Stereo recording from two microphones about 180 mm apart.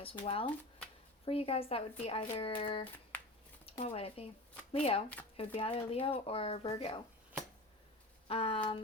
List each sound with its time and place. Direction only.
0.0 s speech: 30° left (ahead or behind)
8.3 s speech: 30° left (ahead or behind)